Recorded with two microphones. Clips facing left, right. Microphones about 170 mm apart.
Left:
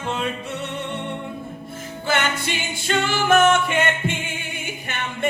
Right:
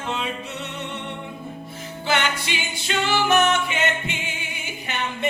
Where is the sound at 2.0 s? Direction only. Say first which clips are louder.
Left 1 dB; 50° left (ahead or behind).